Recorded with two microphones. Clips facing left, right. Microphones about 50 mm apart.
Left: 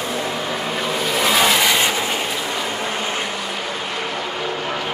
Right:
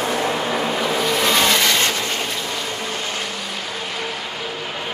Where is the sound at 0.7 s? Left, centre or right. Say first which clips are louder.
Right 2 dB; centre.